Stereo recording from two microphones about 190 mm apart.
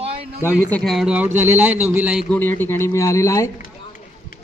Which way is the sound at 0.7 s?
Centre (ahead or behind).